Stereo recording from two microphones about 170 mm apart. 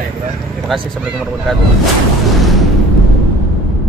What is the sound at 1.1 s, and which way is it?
Baby laughter, centre (ahead or behind).